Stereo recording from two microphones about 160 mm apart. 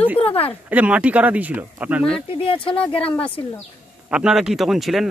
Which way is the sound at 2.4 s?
35° left (ahead or behind).